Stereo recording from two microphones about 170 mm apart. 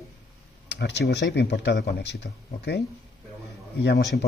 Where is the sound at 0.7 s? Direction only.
80° left.